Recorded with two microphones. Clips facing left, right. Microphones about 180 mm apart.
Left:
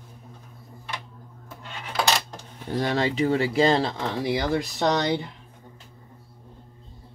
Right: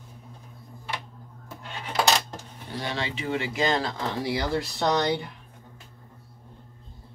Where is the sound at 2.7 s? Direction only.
45° left (ahead or behind); by 5.1 s 20° left (ahead or behind).